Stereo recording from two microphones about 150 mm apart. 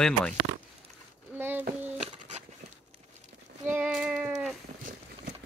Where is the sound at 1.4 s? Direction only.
15° right (ahead or behind).